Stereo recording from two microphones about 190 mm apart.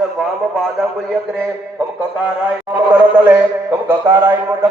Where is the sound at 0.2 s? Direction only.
Centre (ahead or behind).